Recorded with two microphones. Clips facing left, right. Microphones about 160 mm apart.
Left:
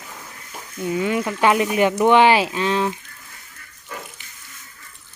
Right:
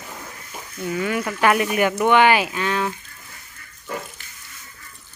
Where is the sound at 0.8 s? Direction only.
20° left (ahead or behind).